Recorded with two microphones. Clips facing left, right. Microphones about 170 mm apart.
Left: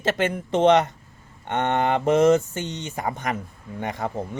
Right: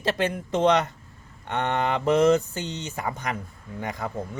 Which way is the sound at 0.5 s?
25° left (ahead or behind).